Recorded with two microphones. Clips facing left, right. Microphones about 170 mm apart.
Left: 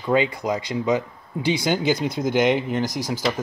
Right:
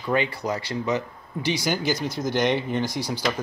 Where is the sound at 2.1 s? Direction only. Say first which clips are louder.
Left 3 dB; 55° left (ahead or behind).